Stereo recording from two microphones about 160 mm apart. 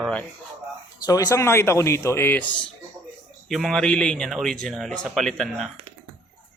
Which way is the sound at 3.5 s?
Centre (ahead or behind).